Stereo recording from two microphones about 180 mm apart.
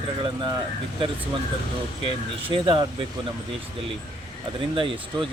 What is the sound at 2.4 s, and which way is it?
Speech, 30° right (ahead or behind).